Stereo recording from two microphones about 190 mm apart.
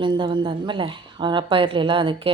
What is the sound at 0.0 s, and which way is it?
A woman's voice, 25° right (ahead or behind).